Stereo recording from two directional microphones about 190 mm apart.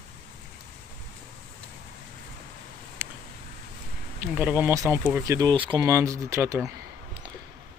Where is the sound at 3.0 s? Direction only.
10° right (ahead or behind).